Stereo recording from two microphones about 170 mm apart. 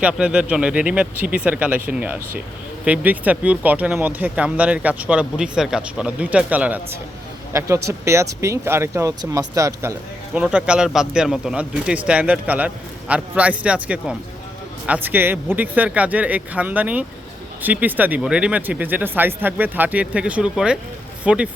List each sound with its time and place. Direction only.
0.0 s speech: 5° right (ahead or behind)
10.3 s speech: 5° right (ahead or behind)